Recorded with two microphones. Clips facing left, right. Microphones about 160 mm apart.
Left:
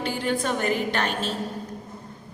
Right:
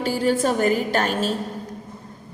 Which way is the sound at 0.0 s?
40° right (ahead or behind).